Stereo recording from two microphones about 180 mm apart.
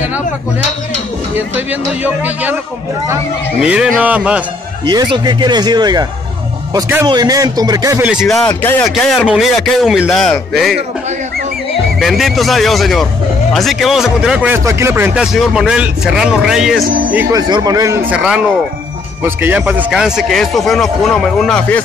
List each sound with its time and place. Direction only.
1.3 s speech: 10° right (ahead or behind)
3.6 s speech: 5° right (ahead or behind)
4.8 s speech: 25° right (ahead or behind)
6.7 s speech: 10° right (ahead or behind)
8.5 s speech: 15° left (ahead or behind)
12.0 s speech: centre (ahead or behind)
17.3 s speech: 20° right (ahead or behind)
18.1 s speech: 5° right (ahead or behind)